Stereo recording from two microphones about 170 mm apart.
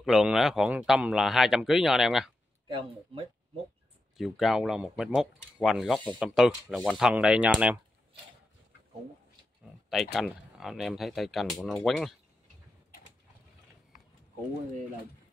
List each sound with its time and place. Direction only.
0.0 s speech: centre (ahead or behind)
2.7 s speech: 30° right (ahead or behind)
4.2 s speech: centre (ahead or behind)
10.1 s speech: centre (ahead or behind)